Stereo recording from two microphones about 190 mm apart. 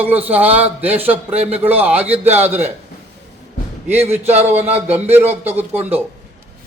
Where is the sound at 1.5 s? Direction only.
10° right (ahead or behind).